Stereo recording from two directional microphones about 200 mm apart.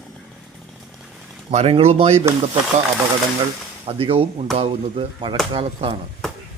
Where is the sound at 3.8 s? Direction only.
25° right (ahead or behind).